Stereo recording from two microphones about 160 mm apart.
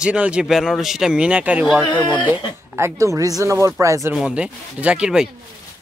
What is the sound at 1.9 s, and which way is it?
Speech, 25° left (ahead or behind).